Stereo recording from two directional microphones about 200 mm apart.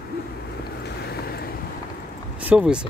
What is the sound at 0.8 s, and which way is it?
Boat, 55° left (ahead or behind).